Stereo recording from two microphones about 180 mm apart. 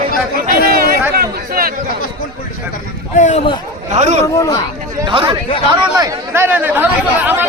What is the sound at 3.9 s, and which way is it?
Speech, 40° right (ahead or behind).